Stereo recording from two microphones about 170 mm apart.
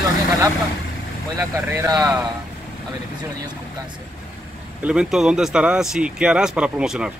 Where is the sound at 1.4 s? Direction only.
15° right (ahead or behind).